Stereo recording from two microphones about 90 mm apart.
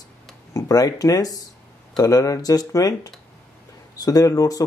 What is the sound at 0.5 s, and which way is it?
Speech, 45° left (ahead or behind).